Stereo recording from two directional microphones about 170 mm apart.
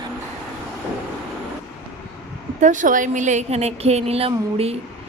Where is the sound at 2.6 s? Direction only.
45° right (ahead or behind).